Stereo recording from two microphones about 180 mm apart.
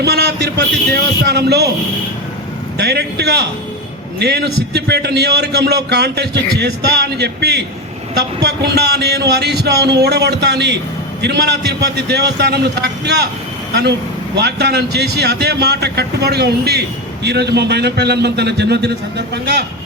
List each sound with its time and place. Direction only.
0.0 s a sound: 60° right (ahead or behind)
1.2 s a man's voice: 65° right (ahead or behind)
2.7 s a man's voice: 65° right (ahead or behind)
14.3 s a man's voice: 65° right (ahead or behind)